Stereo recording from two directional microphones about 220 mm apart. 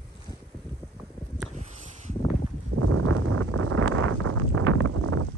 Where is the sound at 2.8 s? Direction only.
90° right.